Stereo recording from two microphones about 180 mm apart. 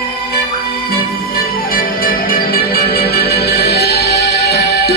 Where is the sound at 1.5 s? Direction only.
55° left (ahead or behind).